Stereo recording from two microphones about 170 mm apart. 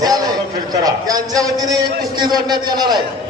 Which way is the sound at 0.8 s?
20° right (ahead or behind).